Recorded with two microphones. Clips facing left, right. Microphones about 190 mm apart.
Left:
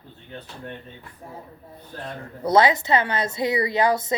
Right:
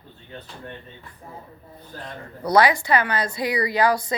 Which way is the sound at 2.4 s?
25° left (ahead or behind).